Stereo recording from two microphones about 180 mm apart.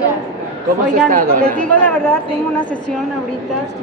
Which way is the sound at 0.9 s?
55° right (ahead or behind).